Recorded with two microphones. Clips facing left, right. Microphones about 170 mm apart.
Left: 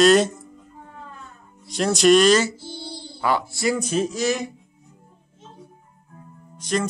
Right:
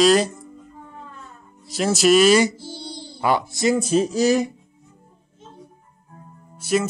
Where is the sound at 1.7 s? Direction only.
5° right (ahead or behind); by 3.7 s 20° right (ahead or behind).